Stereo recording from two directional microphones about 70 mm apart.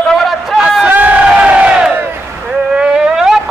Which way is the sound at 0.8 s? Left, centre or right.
Right.